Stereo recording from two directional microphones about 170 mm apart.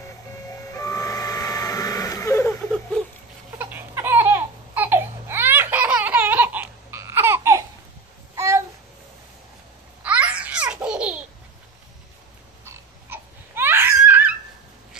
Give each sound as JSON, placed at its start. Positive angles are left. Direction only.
{"t": 0.0, "sound": "vehicle", "side_deg": 20}
{"t": 3.5, "sound": "a sound", "side_deg": -15}
{"t": 10.0, "sound": "laughter", "side_deg": -10}
{"t": 12.6, "sound": "crying", "side_deg": -15}